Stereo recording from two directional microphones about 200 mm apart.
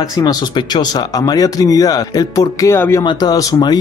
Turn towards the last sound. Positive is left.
turn(degrees=20)  # may be behind; listen again after turning